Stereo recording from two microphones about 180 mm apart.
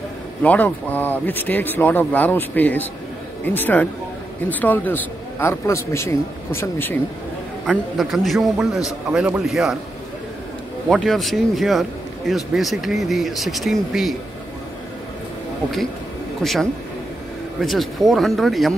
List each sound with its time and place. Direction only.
0.4 s speech: 10° left (ahead or behind)
7.6 s a man's voice: 5° right (ahead or behind)
10.9 s a man's voice: centre (ahead or behind)
17.6 s a man's voice: centre (ahead or behind)